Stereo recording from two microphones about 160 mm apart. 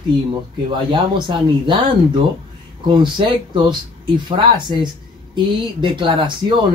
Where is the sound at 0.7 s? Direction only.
30° right (ahead or behind).